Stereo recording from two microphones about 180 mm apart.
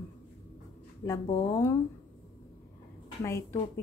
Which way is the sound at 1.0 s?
20° left (ahead or behind).